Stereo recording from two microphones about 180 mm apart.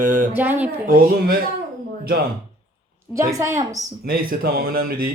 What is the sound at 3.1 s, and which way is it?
Speech, 15° right (ahead or behind).